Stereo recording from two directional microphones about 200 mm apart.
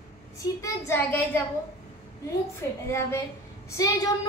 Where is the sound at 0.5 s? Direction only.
15° left (ahead or behind).